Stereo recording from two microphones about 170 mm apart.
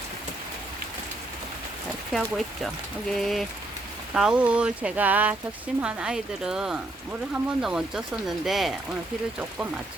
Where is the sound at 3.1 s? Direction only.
Centre (ahead or behind).